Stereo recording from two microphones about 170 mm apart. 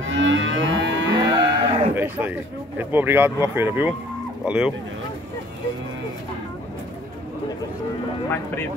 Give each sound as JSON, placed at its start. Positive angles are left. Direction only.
{"t": 0.1, "sound": "livestock", "side_deg": -90}
{"t": 1.1, "sound": "moo", "side_deg": -30}
{"t": 2.0, "sound": "speech", "side_deg": -10}